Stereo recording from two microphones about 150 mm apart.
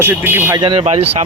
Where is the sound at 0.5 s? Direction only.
35° right (ahead or behind).